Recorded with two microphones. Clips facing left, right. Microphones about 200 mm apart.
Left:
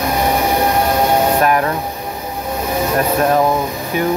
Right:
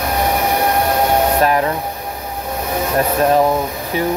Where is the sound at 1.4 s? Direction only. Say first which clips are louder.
Even; 30° right (ahead or behind).